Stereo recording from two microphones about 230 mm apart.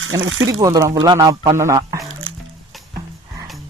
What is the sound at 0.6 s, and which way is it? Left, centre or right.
Speech, centre.